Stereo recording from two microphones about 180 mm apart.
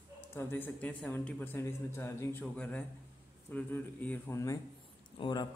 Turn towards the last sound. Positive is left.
turn(degrees=25)  # may be behind; listen again after turning